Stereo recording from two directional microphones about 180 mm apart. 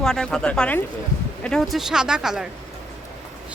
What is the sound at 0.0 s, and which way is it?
Speech, 5° left (ahead or behind).